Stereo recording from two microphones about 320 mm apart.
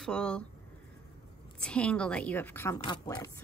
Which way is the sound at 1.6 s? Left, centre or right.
Centre.